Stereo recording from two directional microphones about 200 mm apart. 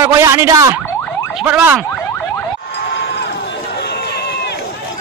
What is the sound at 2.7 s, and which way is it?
Run, 60° left (ahead or behind).